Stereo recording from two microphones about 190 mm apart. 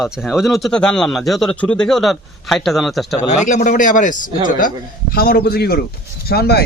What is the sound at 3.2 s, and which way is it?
Speech, 40° left (ahead or behind).